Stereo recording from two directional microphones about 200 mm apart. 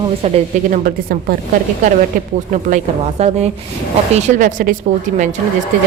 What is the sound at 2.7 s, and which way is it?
A woman's voice, 30° right (ahead or behind).